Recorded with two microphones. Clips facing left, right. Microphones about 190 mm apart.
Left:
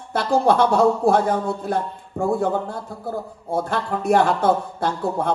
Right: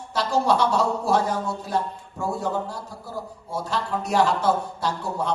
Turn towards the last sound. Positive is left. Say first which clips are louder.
# left 4 dB
turn(degrees=55)  # may be behind; listen again after turning